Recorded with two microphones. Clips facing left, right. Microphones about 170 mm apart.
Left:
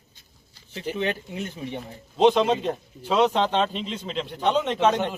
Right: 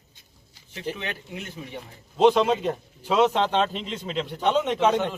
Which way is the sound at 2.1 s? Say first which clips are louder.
Even; centre (ahead or behind).